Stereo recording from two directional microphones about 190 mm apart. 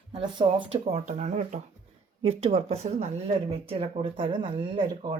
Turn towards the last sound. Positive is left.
turn(degrees=-25)  # may be behind; listen again after turning